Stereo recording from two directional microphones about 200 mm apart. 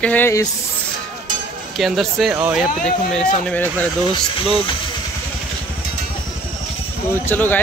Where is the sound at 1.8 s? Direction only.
Centre (ahead or behind).